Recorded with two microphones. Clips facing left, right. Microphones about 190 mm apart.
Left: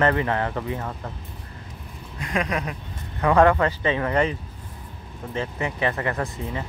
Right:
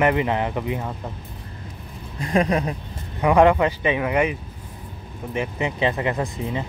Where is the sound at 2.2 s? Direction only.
30° right (ahead or behind).